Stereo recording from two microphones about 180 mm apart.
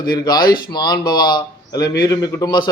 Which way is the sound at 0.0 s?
25° left (ahead or behind).